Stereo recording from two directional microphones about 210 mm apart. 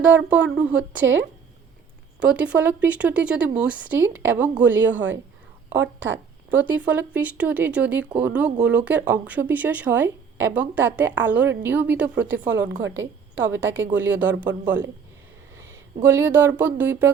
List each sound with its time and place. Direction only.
0.0 s speech: 5° right (ahead or behind)
1.0 s speech: 60° right (ahead or behind)
2.2 s speech: 5° right (ahead or behind)
6.5 s speech: 10° right (ahead or behind)
16.0 s speech: 10° right (ahead or behind)